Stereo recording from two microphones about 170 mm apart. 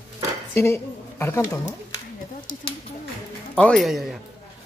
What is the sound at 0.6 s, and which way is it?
A woman's voice, 15° left (ahead or behind).